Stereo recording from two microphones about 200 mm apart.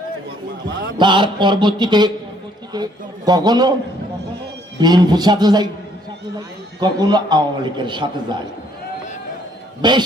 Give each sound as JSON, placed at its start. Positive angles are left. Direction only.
{"t": 0.9, "sound": "a man's voice", "side_deg": -25}
{"t": 4.8, "sound": "a man's voice", "side_deg": -20}
{"t": 6.7, "sound": "a man's voice", "side_deg": -20}
{"t": 9.8, "sound": "a man's voice", "side_deg": -20}